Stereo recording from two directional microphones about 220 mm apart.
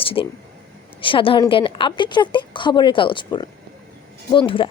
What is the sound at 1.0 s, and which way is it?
Speech, 25° left (ahead or behind).